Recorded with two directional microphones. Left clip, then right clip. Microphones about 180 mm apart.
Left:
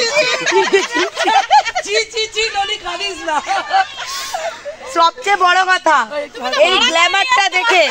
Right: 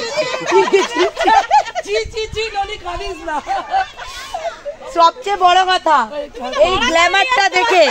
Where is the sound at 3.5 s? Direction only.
10° left (ahead or behind).